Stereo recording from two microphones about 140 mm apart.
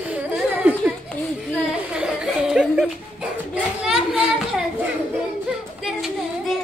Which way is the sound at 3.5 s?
5° right (ahead or behind).